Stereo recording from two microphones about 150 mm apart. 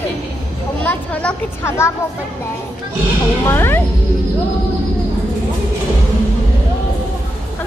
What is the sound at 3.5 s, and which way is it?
Speech, 15° left (ahead or behind).